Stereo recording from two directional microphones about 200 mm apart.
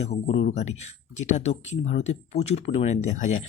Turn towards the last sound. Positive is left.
turn(degrees=35)  # may be behind; listen again after turning